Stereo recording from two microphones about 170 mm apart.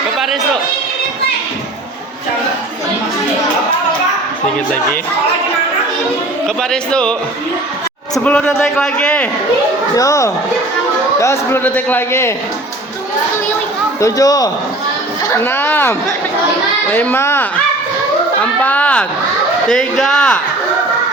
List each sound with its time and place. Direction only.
6.6 s speech: 5° left (ahead or behind)
8.2 s a man's voice: 10° left (ahead or behind)
9.9 s a man's voice: 20° left (ahead or behind)
14.0 s a man's voice: 20° left (ahead or behind)
18.6 s a man's voice: 10° left (ahead or behind)